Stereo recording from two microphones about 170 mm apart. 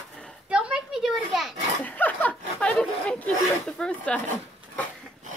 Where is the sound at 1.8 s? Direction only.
10° left (ahead or behind).